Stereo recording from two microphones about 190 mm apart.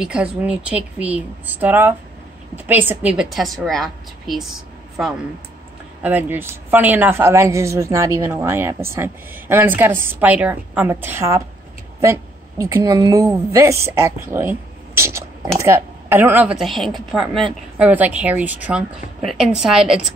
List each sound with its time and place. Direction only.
0.0 s a woman's voice: 5° right (ahead or behind)
14.3 s a sound: 10° right (ahead or behind)
15.6 s a woman's voice: 15° right (ahead or behind)